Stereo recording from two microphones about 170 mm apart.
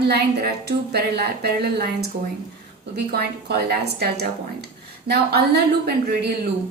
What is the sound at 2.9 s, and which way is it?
A woman's voice, 65° right (ahead or behind).